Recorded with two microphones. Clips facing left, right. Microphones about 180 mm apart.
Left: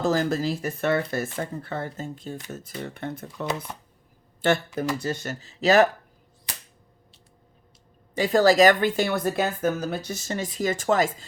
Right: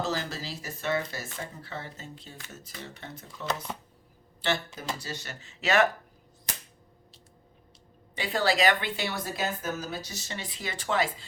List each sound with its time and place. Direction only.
0.0 s speech: 50° left (ahead or behind)
8.1 s speech: 45° left (ahead or behind)